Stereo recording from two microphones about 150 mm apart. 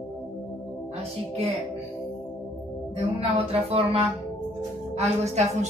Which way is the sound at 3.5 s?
40° right (ahead or behind).